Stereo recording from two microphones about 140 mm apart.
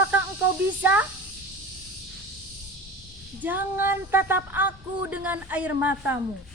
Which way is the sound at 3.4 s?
15° right (ahead or behind).